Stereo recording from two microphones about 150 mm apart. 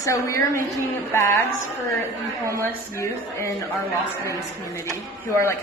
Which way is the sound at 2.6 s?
20° left (ahead or behind).